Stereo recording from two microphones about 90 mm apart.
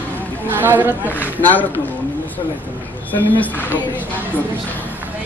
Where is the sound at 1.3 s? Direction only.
20° left (ahead or behind).